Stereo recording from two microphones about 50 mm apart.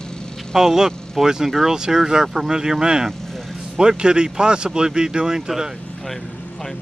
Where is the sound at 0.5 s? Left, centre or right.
Centre.